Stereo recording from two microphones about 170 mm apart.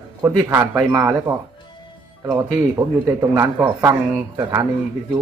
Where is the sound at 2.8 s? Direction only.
15° right (ahead or behind).